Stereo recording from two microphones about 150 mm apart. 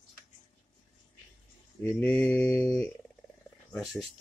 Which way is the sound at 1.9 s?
10° left (ahead or behind).